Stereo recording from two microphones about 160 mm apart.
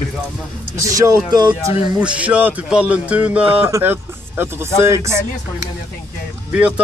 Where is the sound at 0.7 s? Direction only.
20° right (ahead or behind).